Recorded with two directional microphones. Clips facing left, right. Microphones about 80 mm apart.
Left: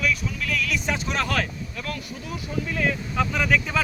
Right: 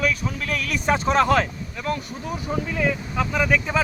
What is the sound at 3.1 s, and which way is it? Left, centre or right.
Speech, centre.